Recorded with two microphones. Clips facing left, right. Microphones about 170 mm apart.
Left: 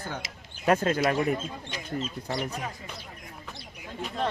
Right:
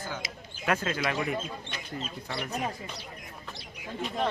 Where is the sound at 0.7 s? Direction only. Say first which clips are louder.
Left 6 dB; 40° left (ahead or behind).